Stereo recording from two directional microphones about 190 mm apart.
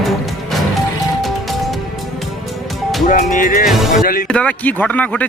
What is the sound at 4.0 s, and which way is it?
Speech, 50° left (ahead or behind).